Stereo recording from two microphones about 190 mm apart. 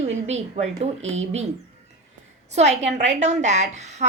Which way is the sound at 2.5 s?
35° right (ahead or behind).